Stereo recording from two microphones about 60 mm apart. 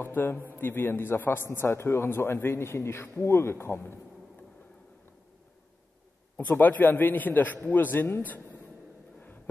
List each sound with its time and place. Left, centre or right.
0.0 s a man's voice: left
6.3 s a man's voice: left